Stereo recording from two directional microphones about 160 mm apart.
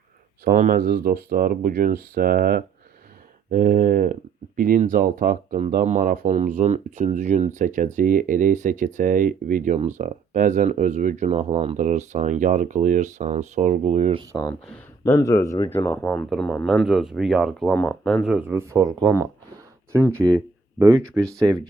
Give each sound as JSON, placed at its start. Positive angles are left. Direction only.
{"t": 0.4, "sound": "speech", "side_deg": -55}
{"t": 11.8, "sound": "speech", "side_deg": -50}
{"t": 15.0, "sound": "speech", "side_deg": 20}
{"t": 21.3, "sound": "speech", "side_deg": -20}